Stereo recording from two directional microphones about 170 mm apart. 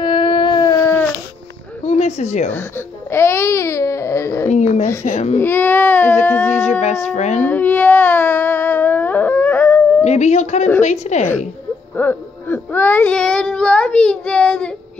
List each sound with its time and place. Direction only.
0.0 s a sound: 30° left (ahead or behind)
1.9 s speech: 40° left (ahead or behind)
3.1 s speech: 15° left (ahead or behind)
4.5 s speech: 40° left (ahead or behind)
5.4 s speech: 10° left (ahead or behind)
6.6 s speech: 40° left (ahead or behind)
7.4 s a sound: 10° left (ahead or behind)
10.0 s speech: 40° left (ahead or behind)
12.0 s speech: 10° left (ahead or behind)